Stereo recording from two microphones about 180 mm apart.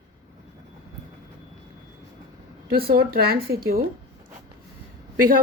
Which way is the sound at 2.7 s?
55° right (ahead or behind).